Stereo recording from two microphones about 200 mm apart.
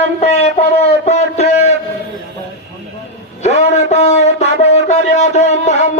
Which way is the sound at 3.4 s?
35° left (ahead or behind).